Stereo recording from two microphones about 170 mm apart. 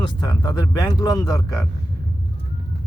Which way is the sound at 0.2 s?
25° left (ahead or behind).